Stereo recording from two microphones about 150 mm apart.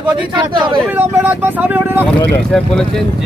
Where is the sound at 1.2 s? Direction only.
15° right (ahead or behind).